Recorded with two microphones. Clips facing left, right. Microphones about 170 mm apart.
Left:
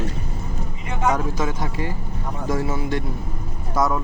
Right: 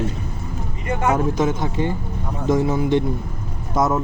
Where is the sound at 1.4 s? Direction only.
25° right (ahead or behind).